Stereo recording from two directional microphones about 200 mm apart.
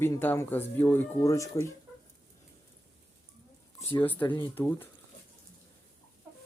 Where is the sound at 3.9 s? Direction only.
10° left (ahead or behind).